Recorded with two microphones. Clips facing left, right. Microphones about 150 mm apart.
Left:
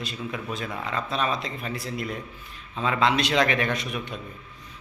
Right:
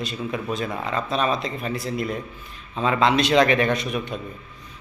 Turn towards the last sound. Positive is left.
turn(degrees=-30)  # may be behind; listen again after turning